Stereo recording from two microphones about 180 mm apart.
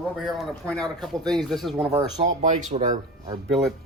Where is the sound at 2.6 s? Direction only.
45° right (ahead or behind).